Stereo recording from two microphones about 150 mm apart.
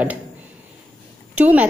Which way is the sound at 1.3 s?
10° right (ahead or behind).